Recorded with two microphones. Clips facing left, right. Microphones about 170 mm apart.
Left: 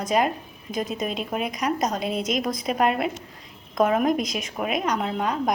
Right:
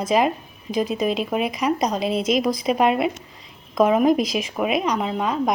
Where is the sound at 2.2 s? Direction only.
Centre (ahead or behind).